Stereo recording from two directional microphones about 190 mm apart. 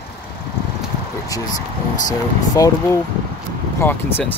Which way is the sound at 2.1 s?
20° left (ahead or behind).